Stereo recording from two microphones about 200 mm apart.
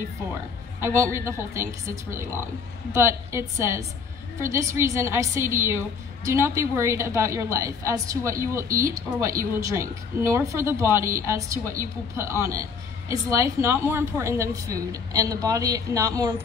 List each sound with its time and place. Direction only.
0.7 s a woman's voice: 15° right (ahead or behind)